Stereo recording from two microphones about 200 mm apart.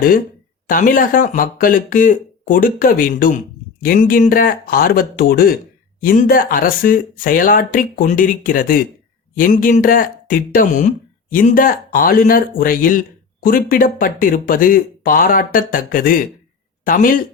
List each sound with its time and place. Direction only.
0.7 s speech: 45° left (ahead or behind)